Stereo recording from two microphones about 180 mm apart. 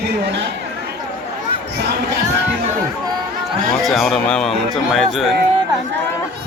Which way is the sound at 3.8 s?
Centre (ahead or behind).